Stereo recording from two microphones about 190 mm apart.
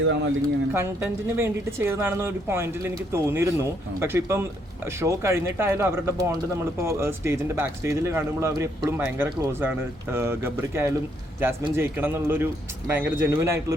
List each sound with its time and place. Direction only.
0.0 s speech: 70° right (ahead or behind)
0.7 s speech: 15° right (ahead or behind)